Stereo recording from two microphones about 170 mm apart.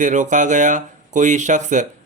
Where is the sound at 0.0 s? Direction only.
45° right (ahead or behind).